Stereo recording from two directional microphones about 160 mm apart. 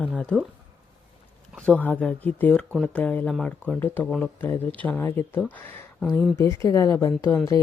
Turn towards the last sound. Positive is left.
turn(degrees=20)  # may be behind; listen again after turning